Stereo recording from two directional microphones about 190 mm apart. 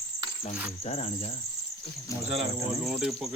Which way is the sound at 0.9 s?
35° left (ahead or behind).